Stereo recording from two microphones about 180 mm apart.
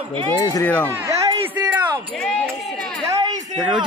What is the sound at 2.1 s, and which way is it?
Speech, centre (ahead or behind).